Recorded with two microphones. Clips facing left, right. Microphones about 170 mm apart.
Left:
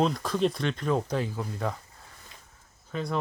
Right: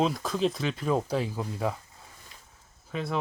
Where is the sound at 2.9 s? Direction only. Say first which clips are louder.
Even; centre (ahead or behind).